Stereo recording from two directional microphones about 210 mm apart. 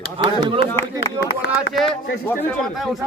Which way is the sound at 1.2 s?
55° left (ahead or behind).